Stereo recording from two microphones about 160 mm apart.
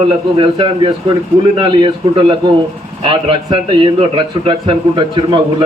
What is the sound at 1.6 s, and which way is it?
A man's voice, 30° right (ahead or behind).